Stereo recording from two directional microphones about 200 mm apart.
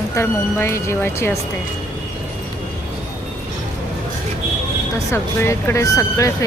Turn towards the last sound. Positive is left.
turn(degrees=15)  # may be behind; listen again after turning